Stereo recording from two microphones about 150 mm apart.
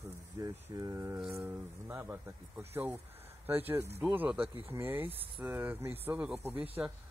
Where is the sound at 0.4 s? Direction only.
20° right (ahead or behind).